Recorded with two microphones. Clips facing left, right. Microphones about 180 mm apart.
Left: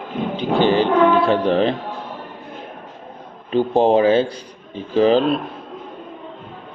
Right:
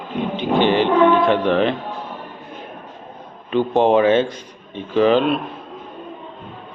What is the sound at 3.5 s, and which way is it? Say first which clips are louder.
A man's voice: even; 35° left (ahead or behind).